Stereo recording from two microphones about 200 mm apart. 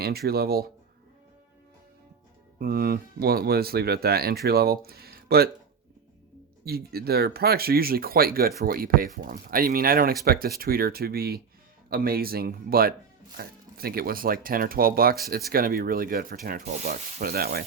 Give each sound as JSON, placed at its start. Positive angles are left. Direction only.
{"t": 0.0, "sound": "speech", "side_deg": -50}
{"t": 2.6, "sound": "speech", "side_deg": -50}
{"t": 6.7, "sound": "speech", "side_deg": -50}